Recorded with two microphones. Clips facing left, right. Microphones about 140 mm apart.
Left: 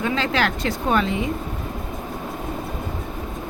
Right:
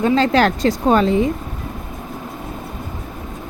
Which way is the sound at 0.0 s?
40° right (ahead or behind).